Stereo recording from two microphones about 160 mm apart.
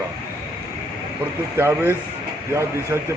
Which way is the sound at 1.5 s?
15° right (ahead or behind).